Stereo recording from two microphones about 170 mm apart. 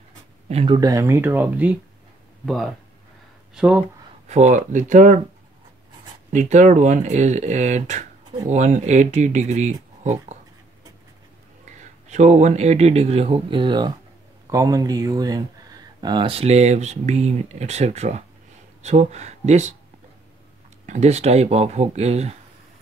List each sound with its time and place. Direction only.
0.5 s speech: 35° right (ahead or behind)
0.7 s speech: 20° right (ahead or behind)
2.4 s speech: centre (ahead or behind)
4.3 s speech: 45° right (ahead or behind)
6.3 s speech: 45° right (ahead or behind)
11.6 s speech: 45° right (ahead or behind)
20.8 s speech: 45° right (ahead or behind)